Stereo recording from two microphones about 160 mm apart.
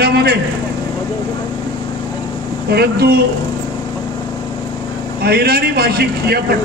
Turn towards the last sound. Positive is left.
turn(degrees=-85)